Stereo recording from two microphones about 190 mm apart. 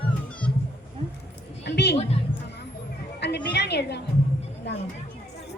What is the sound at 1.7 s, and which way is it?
Speech, 60° left (ahead or behind).